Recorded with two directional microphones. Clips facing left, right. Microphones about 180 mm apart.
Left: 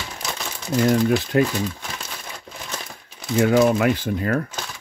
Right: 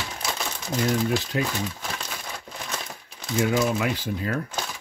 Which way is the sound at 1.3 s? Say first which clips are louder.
Left 11 dB; 55° left (ahead or behind).